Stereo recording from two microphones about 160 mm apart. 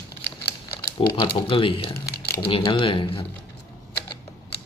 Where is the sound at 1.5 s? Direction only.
35° left (ahead or behind).